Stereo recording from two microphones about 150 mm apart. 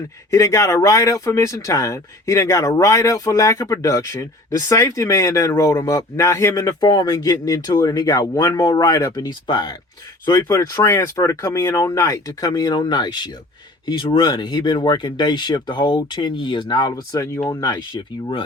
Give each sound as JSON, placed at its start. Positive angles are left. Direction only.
{"t": 0.3, "sound": "speech", "side_deg": 20}